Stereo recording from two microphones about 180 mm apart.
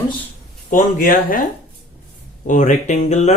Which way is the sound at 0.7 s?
45° left (ahead or behind).